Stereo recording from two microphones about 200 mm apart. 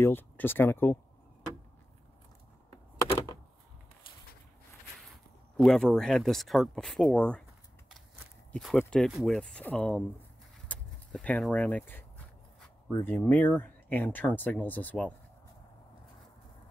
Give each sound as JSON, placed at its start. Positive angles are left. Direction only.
{"t": 0.0, "sound": "speech", "side_deg": 10}
{"t": 5.6, "sound": "speech", "side_deg": 5}
{"t": 8.5, "sound": "speech", "side_deg": 5}
{"t": 12.5, "sound": "a sound", "side_deg": 0}
{"t": 12.9, "sound": "speech", "side_deg": 10}